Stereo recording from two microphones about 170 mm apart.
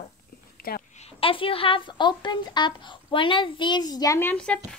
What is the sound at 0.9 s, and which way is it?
A woman's voice, 35° left (ahead or behind).